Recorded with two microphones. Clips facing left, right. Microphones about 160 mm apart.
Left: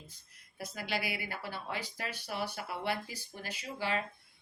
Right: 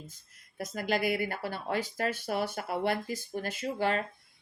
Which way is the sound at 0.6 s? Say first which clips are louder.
Right 7 dB; 45° right (ahead or behind).